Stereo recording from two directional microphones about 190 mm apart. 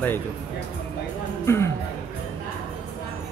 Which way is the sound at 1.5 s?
15° left (ahead or behind).